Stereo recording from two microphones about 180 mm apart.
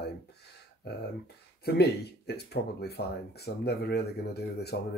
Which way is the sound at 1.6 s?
60° left (ahead or behind).